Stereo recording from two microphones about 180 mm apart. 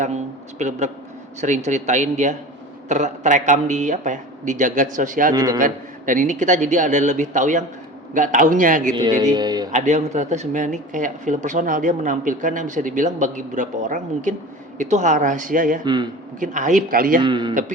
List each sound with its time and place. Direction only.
0.6 s speech: 40° right (ahead or behind)
5.3 s speech: 20° right (ahead or behind)
5.5 s speech: 45° right (ahead or behind)
9.0 s speech: 20° right (ahead or behind)
9.7 s speech: 40° right (ahead or behind)
15.8 s speech: 25° right (ahead or behind)
16.4 s speech: 45° right (ahead or behind)
17.2 s speech: 25° right (ahead or behind)